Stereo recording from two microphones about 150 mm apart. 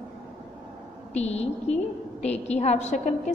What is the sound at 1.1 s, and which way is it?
A woman's voice, 45° left (ahead or behind).